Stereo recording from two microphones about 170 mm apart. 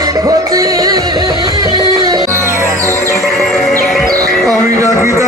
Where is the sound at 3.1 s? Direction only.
Centre (ahead or behind).